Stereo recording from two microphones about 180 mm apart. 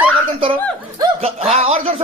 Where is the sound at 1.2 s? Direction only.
35° right (ahead or behind).